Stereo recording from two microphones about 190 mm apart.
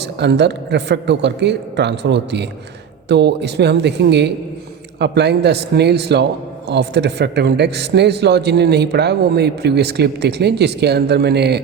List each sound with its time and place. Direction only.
0.2 s speech: 65° right (ahead or behind)